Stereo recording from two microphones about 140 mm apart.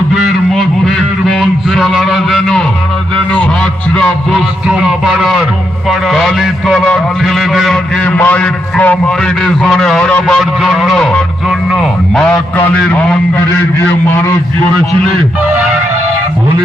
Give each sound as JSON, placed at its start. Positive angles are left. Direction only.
{"t": 0.1, "sound": "music", "side_deg": 0}
{"t": 5.9, "sound": "a man's voice", "side_deg": 0}
{"t": 8.0, "sound": "a man's voice", "side_deg": 10}
{"t": 12.5, "sound": "a man's voice", "side_deg": 10}